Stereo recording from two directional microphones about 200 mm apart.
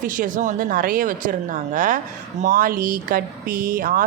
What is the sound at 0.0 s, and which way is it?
Speech, 40° right (ahead or behind).